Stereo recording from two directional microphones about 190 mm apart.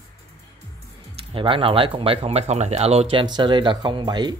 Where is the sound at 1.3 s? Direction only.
30° right (ahead or behind).